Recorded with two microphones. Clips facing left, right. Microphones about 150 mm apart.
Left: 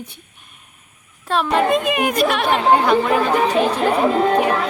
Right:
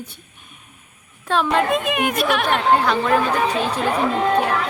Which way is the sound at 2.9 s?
10° left (ahead or behind).